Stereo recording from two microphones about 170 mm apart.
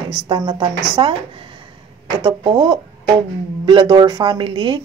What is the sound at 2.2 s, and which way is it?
A woman's voice, 30° right (ahead or behind).